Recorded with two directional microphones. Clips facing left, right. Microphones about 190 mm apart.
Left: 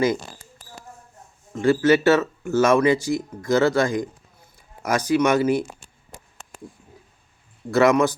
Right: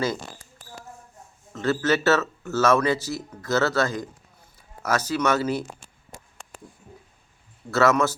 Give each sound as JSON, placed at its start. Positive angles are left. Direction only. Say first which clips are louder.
{"t": 1.5, "sound": "speech", "louder": "left 6 dB", "side_deg": 10}
{"t": 7.7, "sound": "speech", "louder": "left 3 dB", "side_deg": 15}